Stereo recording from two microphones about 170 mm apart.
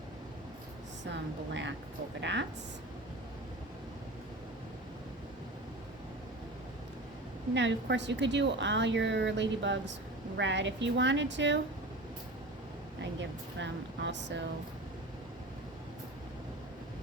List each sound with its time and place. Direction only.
1.1 s a woman's voice: 90° right
7.5 s a woman's voice: 90° right
13.6 s a woman's voice: 90° right